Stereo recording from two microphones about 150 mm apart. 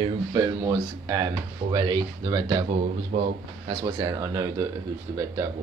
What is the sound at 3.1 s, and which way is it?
Speech, 45° right (ahead or behind).